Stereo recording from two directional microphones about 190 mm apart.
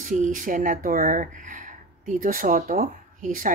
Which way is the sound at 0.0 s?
45° right (ahead or behind).